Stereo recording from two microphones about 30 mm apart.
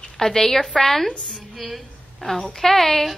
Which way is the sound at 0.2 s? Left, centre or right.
Centre.